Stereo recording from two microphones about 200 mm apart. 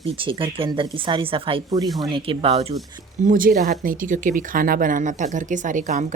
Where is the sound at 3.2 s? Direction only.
45° right (ahead or behind).